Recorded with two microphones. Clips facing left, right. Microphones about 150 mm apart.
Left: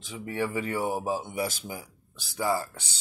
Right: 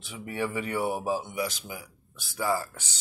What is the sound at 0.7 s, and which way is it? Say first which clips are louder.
Speech: even; 45° left (ahead or behind).